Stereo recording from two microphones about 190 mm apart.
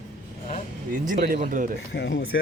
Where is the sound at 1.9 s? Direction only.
60° left (ahead or behind); by 2.4 s 75° left (ahead or behind).